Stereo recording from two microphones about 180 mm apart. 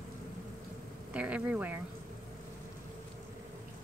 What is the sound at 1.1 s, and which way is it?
Speech, 5° right (ahead or behind).